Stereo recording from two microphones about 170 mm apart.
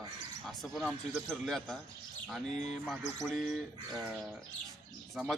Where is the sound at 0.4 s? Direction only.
Centre (ahead or behind).